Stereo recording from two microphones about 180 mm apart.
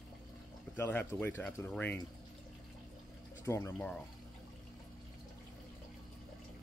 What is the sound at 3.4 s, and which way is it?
Speech, 15° left (ahead or behind).